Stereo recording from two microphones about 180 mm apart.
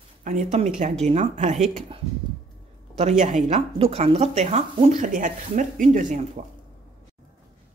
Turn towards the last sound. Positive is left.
turn(degrees=-40)  # may be behind; listen again after turning